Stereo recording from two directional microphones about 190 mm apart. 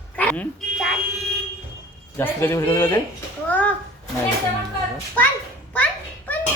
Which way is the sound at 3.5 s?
10° left (ahead or behind).